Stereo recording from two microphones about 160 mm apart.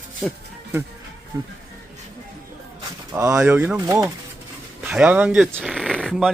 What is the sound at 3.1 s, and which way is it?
Speech, 20° right (ahead or behind).